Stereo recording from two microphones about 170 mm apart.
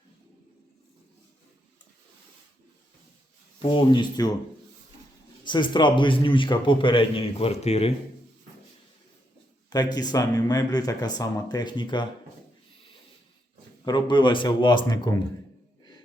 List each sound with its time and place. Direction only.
3.6 s a man's voice: 30° left (ahead or behind)
5.5 s a man's voice: 25° left (ahead or behind)
9.6 s a man's voice: 25° left (ahead or behind)
13.8 s a man's voice: 25° left (ahead or behind)